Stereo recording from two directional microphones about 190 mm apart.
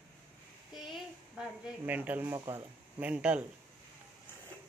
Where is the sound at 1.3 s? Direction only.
5° right (ahead or behind).